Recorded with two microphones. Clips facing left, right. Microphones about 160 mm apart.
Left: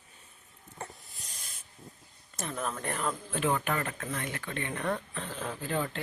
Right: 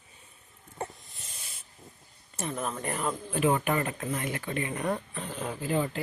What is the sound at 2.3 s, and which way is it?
Speech, 10° right (ahead or behind).